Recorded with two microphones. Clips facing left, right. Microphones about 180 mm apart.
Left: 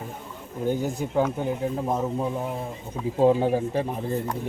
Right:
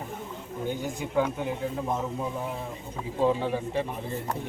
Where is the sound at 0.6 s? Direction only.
40° left (ahead or behind).